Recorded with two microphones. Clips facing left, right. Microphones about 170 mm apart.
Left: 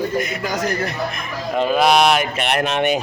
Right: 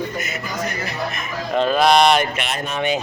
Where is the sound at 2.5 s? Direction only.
75° left (ahead or behind).